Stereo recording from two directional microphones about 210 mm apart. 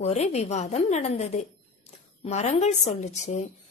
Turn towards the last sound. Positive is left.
turn(degrees=35)  # may be behind; listen again after turning